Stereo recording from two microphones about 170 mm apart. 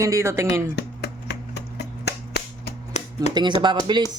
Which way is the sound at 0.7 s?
80° left.